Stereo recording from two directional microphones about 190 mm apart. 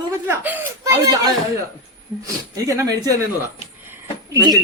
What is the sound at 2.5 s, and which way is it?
Speech, 20° right (ahead or behind).